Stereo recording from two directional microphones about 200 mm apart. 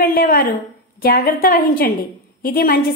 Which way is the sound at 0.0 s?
45° left (ahead or behind).